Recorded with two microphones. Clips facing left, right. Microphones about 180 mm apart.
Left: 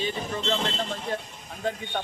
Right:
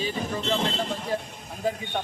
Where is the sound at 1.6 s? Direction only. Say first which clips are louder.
Right 2 dB; 5° right (ahead or behind).